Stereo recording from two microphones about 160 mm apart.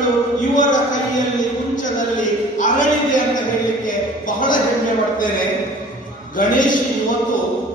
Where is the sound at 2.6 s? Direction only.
55° left (ahead or behind).